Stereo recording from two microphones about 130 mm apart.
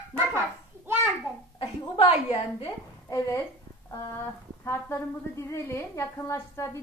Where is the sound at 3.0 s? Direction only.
25° left (ahead or behind).